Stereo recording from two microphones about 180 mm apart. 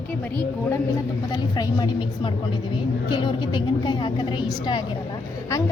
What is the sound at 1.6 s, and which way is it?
Speech, 25° left (ahead or behind).